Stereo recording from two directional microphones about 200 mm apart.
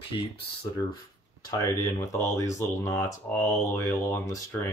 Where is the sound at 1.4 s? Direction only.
20° left (ahead or behind).